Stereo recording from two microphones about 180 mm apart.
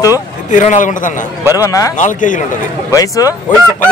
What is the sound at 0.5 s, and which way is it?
Speech, 45° left (ahead or behind).